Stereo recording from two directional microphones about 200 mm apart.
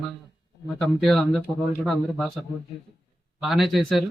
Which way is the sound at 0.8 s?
Centre (ahead or behind).